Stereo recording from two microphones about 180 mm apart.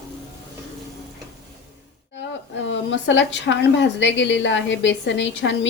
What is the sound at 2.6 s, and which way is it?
A woman's voice, 90° left.